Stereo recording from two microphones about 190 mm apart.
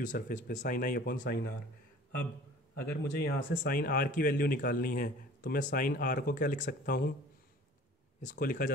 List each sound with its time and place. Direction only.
0.0 s speech: 40° left (ahead or behind)
2.7 s speech: 60° left (ahead or behind)
8.2 s speech: 45° left (ahead or behind)